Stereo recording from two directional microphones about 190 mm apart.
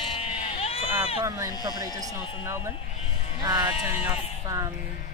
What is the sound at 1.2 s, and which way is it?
Speech, 15° right (ahead or behind).